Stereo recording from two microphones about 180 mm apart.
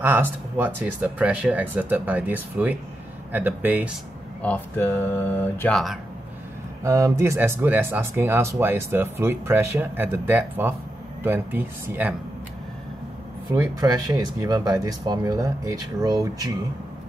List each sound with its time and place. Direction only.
0.0 s speech: 10° right (ahead or behind)
4.4 s speech: 10° left (ahead or behind)
6.8 s speech: 15° right (ahead or behind)
13.6 s speech: 20° right (ahead or behind)